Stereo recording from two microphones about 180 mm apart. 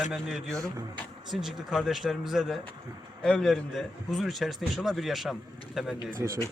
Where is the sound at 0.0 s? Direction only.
5° right (ahead or behind).